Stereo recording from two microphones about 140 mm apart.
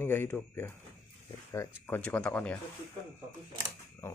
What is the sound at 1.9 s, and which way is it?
Speech, 10° left (ahead or behind).